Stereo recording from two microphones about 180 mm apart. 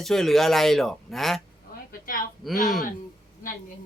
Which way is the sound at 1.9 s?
50° left (ahead or behind).